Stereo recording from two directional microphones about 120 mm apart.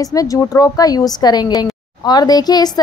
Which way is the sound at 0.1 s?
30° left (ahead or behind).